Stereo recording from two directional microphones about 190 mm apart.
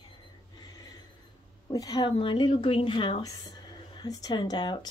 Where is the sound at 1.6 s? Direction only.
20° left (ahead or behind).